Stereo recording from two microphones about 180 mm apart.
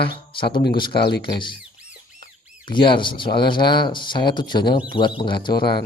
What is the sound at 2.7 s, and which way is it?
Speech, 25° left (ahead or behind).